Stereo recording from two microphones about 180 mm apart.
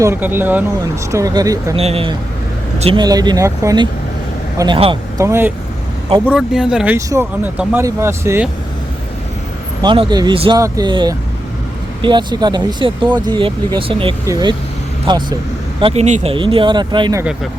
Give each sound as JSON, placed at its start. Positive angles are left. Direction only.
{"t": 0.0, "sound": "speech", "side_deg": -10}
{"t": 1.7, "sound": "speech", "side_deg": -35}
{"t": 3.0, "sound": "speech", "side_deg": -20}
{"t": 5.2, "sound": "speech", "side_deg": -15}
{"t": 9.8, "sound": "speech", "side_deg": -25}